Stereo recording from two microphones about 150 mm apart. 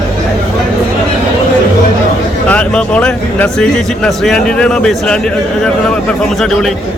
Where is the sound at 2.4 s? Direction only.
10° left (ahead or behind).